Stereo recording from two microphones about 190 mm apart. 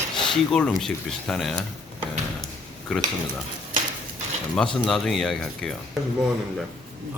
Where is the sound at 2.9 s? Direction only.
5° left (ahead or behind).